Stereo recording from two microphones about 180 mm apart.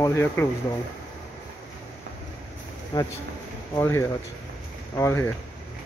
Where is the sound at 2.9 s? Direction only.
20° left (ahead or behind).